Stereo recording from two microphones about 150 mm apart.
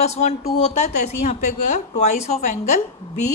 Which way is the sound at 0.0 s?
45° left (ahead or behind).